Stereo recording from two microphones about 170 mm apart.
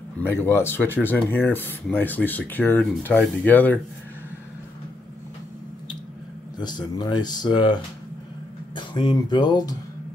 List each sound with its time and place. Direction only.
0.4 s speech: 15° left (ahead or behind)
6.6 s speech: 25° left (ahead or behind)